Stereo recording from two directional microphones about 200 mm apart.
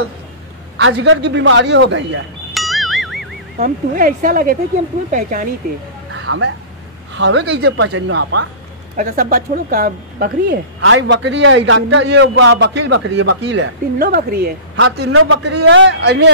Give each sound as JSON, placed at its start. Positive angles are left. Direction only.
{"t": 0.7, "sound": "a man's voice", "side_deg": -70}
{"t": 2.5, "sound": "music", "side_deg": 0}
{"t": 3.5, "sound": "a woman's voice", "side_deg": -45}
{"t": 6.1, "sound": "a sound", "side_deg": -75}
{"t": 7.2, "sound": "a man's voice", "side_deg": -60}
{"t": 8.9, "sound": "a woman's voice", "side_deg": -45}
{"t": 10.8, "sound": "a man's voice", "side_deg": -70}
{"t": 15.1, "sound": "a man's voice", "side_deg": -90}